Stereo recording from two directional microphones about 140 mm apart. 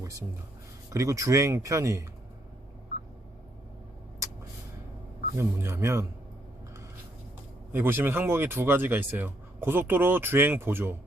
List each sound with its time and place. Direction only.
0.9 s speech: 25° right (ahead or behind)
5.4 s speech: 15° right (ahead or behind)
7.7 s speech: 15° right (ahead or behind)